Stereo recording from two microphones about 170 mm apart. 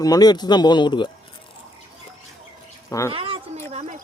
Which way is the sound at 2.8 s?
20° left (ahead or behind).